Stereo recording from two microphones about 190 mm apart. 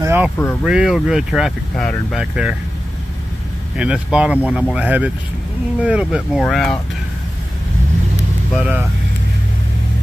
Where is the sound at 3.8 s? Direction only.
5° right (ahead or behind).